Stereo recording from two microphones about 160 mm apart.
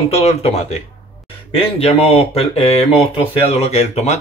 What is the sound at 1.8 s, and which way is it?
Speech, 40° left (ahead or behind).